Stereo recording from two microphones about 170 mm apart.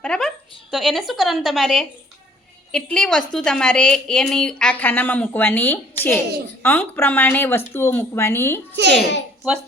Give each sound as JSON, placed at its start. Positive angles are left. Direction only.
{"t": 0.0, "sound": "a sound", "side_deg": 5}
{"t": 0.7, "sound": "a woman's voice", "side_deg": 0}
{"t": 8.7, "sound": "a child's voice", "side_deg": -80}